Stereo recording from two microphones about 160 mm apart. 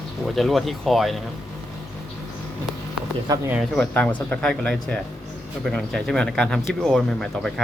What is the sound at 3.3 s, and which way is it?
Speech, 25° right (ahead or behind).